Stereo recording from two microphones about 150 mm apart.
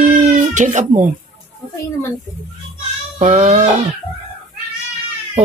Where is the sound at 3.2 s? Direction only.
55° right (ahead or behind).